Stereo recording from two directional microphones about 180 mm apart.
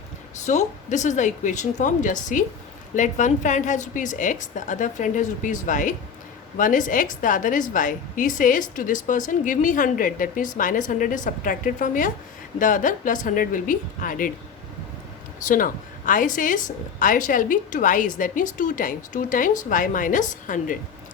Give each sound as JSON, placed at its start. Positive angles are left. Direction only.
{"t": 0.3, "sound": "a woman's voice", "side_deg": 40}
{"t": 15.4, "sound": "a woman's voice", "side_deg": 50}